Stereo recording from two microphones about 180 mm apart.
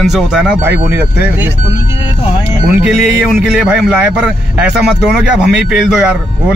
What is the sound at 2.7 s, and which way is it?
A man's voice, 5° right (ahead or behind).